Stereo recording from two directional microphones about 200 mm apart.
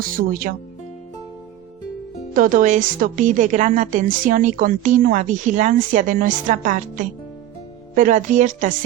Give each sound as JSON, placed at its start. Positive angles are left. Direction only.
{"t": 0.1, "sound": "speech", "side_deg": -45}
{"t": 2.3, "sound": "speech", "side_deg": -40}